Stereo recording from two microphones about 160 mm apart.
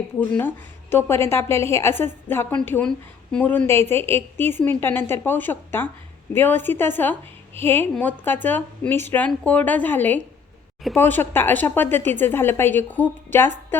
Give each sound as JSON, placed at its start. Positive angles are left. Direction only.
{"t": 0.2, "sound": "a woman's voice", "side_deg": 15}